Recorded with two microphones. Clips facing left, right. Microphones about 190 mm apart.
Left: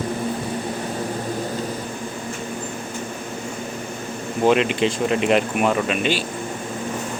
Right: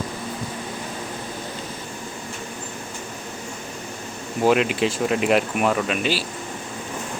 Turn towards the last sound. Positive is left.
turn(degrees=0)  # may be behind; listen again after turning